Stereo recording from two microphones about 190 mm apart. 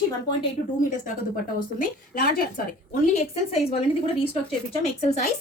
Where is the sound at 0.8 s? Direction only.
45° left (ahead or behind).